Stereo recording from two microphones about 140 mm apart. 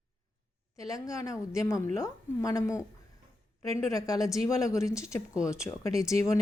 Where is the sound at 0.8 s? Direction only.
25° left (ahead or behind).